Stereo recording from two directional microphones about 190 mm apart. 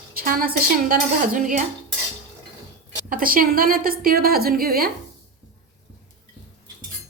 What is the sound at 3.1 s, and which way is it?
A woman's voice, 50° right (ahead or behind).